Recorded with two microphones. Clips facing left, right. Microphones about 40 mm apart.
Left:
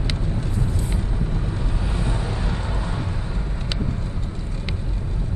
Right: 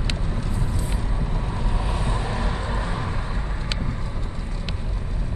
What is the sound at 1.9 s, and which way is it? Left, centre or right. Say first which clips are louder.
Vehicle: even; centre.